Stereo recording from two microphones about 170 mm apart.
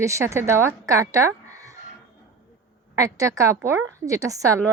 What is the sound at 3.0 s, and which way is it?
A woman's voice, 20° right (ahead or behind).